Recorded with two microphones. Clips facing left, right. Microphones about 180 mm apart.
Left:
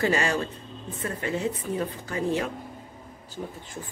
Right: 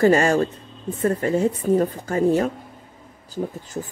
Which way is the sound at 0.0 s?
45° right (ahead or behind).